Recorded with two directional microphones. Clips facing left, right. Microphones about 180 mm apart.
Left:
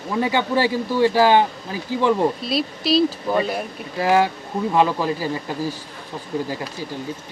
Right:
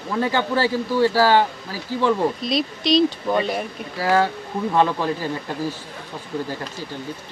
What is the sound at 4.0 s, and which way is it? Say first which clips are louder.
Speech: left 2 dB; 15° left (ahead or behind).